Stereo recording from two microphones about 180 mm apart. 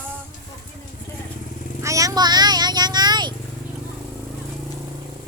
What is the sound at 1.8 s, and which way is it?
Vehicle, 20° right (ahead or behind).